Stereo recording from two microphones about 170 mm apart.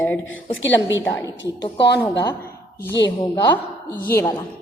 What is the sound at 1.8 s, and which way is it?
Speech, 85° left.